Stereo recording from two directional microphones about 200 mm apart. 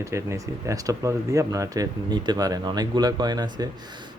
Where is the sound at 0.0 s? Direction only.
15° right (ahead or behind).